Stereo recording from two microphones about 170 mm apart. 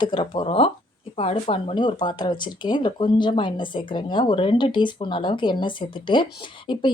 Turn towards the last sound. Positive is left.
turn(degrees=30)  # may be behind; listen again after turning